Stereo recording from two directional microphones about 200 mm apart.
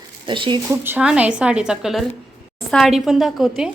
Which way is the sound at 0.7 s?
10° right (ahead or behind).